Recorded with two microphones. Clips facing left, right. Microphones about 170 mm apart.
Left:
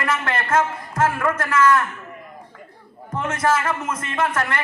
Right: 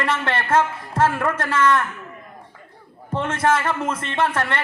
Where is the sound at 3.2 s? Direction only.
30° right (ahead or behind).